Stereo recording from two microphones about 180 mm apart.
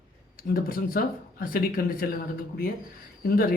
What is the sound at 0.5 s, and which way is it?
Speech, 55° left (ahead or behind).